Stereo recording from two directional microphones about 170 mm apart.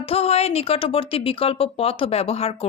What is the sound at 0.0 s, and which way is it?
Speech, 35° left (ahead or behind).